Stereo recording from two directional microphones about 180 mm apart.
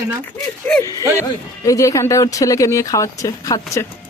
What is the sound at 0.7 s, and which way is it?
Speech, 5° left (ahead or behind).